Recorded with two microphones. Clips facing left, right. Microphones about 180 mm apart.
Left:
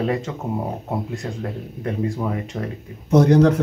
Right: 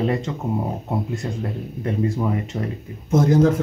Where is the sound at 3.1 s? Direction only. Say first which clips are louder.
Left 2 dB; 70° left (ahead or behind).